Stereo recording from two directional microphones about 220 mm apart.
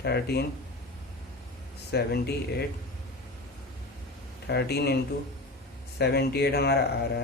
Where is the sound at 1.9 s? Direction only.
45° left (ahead or behind).